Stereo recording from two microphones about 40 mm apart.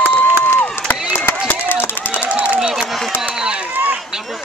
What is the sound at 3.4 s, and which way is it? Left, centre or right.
Run, right.